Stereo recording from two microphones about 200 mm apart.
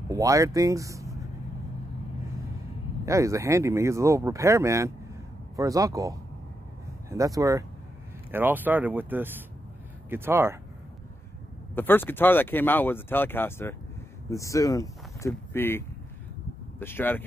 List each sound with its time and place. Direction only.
0.1 s speech: 15° right (ahead or behind)
3.1 s speech: 15° right (ahead or behind)
11.7 s speech: 10° left (ahead or behind)
16.8 s speech: 10° left (ahead or behind)